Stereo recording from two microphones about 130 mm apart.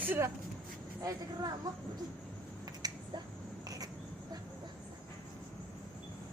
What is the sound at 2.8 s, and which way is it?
Finger snapping, 30° right (ahead or behind).